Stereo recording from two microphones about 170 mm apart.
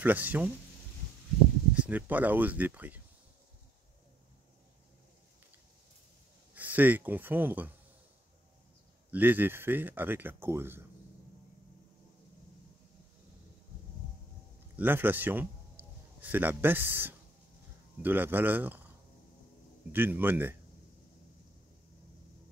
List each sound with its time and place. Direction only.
0.0 s speech: 10° right (ahead or behind)
1.8 s speech: 10° right (ahead or behind)
6.5 s speech: 10° right (ahead or behind)
9.1 s speech: 10° right (ahead or behind)
14.8 s a man's voice: 10° right (ahead or behind)
19.9 s speech: 10° right (ahead or behind)